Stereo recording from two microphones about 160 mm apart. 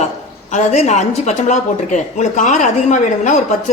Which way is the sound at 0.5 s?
45° left (ahead or behind).